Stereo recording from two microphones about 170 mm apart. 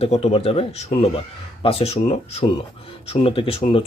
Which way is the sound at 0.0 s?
35° left (ahead or behind).